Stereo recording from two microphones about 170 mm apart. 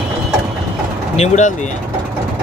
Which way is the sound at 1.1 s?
40° left (ahead or behind).